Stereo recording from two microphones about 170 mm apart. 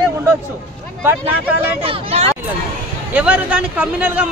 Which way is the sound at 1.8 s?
35° right (ahead or behind).